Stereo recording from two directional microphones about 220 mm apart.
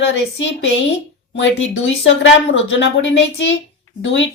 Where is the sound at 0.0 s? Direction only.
55° left (ahead or behind).